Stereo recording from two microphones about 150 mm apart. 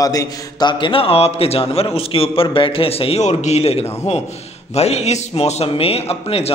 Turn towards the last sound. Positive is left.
turn(degrees=40)  # may be behind; listen again after turning